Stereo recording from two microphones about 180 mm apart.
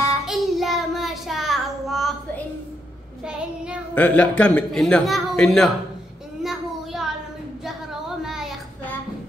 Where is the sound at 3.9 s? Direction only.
10° left (ahead or behind).